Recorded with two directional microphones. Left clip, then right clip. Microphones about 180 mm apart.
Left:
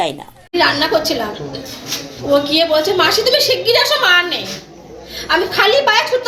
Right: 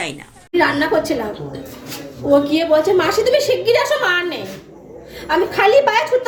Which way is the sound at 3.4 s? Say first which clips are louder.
Left 2 dB; 40° right (ahead or behind).